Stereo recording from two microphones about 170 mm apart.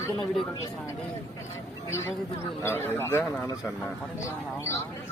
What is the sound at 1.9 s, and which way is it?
Speech, 15° left (ahead or behind).